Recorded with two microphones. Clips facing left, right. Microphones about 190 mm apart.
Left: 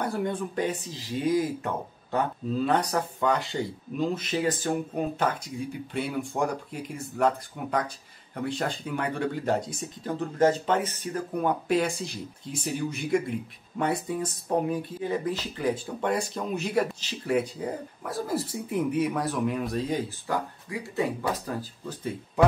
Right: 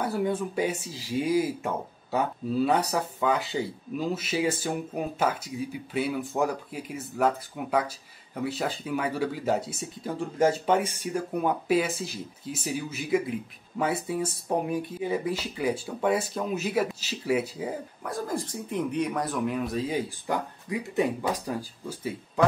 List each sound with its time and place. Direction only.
0.0 s speech: 5° right (ahead or behind)
18.0 s speech: 5° left (ahead or behind)
20.2 s speech: 20° right (ahead or behind)